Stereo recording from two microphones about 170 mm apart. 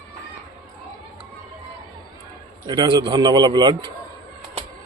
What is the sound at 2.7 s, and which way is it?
A man's voice, 25° right (ahead or behind).